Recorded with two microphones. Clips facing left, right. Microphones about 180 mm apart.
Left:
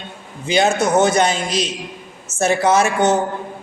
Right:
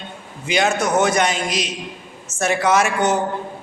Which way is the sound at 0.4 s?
30° left (ahead or behind).